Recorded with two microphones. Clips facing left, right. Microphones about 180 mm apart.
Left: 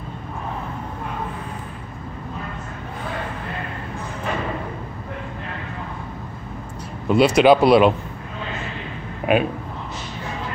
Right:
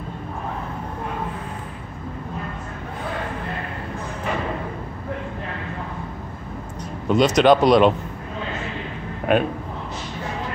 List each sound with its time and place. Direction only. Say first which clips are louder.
7.1 s speech: left 1 dB; 10° left (ahead or behind)
9.2 s speech: even; 5° left (ahead or behind)